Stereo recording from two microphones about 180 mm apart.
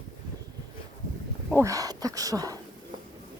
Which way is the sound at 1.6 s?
20° right (ahead or behind).